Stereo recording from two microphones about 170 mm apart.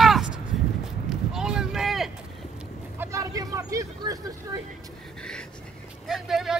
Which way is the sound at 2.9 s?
20° right (ahead or behind).